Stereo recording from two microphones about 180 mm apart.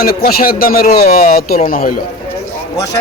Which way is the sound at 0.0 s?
55° left (ahead or behind).